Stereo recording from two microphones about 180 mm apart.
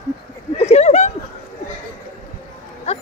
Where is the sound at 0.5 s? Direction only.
35° left (ahead or behind).